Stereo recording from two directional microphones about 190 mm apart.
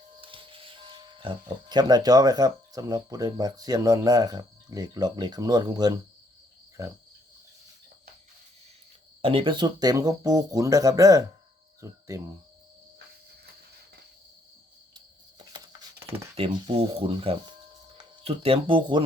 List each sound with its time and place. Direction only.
0.2 s speech: 25° right (ahead or behind)
6.8 s cricket: 15° right (ahead or behind)
9.2 s speech: 30° right (ahead or behind)
15.5 s a sound: 15° right (ahead or behind)
16.3 s speech: 30° right (ahead or behind)